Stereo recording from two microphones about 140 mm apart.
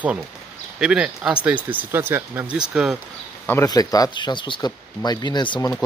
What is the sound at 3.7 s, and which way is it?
Speech, 25° left (ahead or behind).